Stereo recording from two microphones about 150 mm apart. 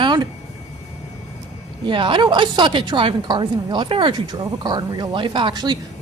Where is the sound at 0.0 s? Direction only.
30° right (ahead or behind).